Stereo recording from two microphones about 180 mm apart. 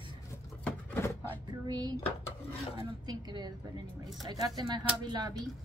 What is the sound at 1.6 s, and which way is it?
Speech, 25° right (ahead or behind).